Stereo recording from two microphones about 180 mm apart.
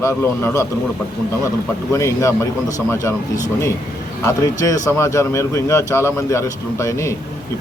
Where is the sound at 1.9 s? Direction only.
15° left (ahead or behind).